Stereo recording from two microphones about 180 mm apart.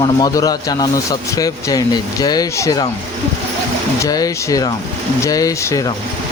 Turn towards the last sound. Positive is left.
turn(degrees=20)  # may be behind; listen again after turning